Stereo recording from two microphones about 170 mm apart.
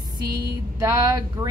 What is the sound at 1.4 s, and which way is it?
Speech, 20° right (ahead or behind).